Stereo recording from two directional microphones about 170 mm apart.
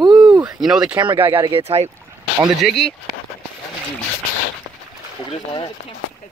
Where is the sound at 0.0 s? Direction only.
25° right (ahead or behind).